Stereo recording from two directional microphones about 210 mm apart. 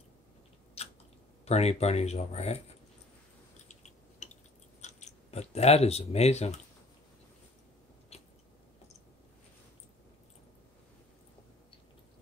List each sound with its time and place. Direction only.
0.8 s chewing: 30° left (ahead or behind)
1.4 s speech: 30° left (ahead or behind)
3.6 s a sound: 35° left (ahead or behind)
4.8 s speech: 30° left (ahead or behind)
8.1 s biting: 30° left (ahead or behind)